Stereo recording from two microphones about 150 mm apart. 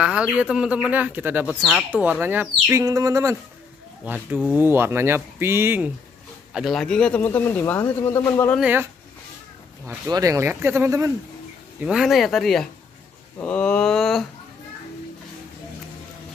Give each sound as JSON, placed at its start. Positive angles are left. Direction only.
{"t": 0.0, "sound": "speech", "side_deg": -5}
{"t": 1.9, "sound": "speech", "side_deg": -10}
{"t": 2.7, "sound": "speech", "side_deg": -20}
{"t": 4.0, "sound": "speech", "side_deg": -10}
{"t": 6.5, "sound": "speech", "side_deg": 0}
{"t": 8.5, "sound": "speech", "side_deg": -10}
{"t": 9.8, "sound": "speech", "side_deg": -20}
{"t": 11.8, "sound": "speech", "side_deg": -5}
{"t": 13.4, "sound": "a sound", "side_deg": 10}